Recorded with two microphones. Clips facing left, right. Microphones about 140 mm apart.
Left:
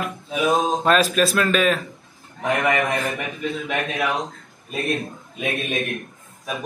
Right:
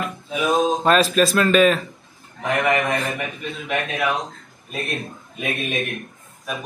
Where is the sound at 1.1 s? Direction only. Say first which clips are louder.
Right 3 dB; centre (ahead or behind).